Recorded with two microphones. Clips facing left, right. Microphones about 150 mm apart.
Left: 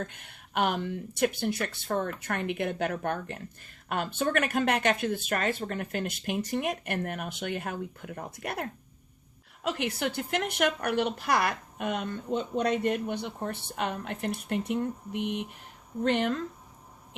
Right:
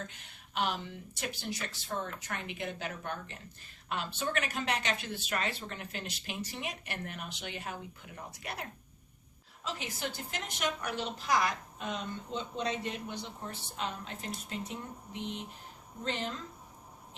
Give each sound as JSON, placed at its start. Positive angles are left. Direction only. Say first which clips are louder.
{"t": 0.0, "sound": "a woman's voice", "louder": "left 7 dB", "side_deg": 55}
{"t": 9.6, "sound": "a woman's voice", "louder": "left 8 dB", "side_deg": 60}